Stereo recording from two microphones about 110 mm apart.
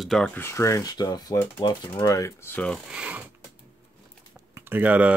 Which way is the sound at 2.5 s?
10° left (ahead or behind).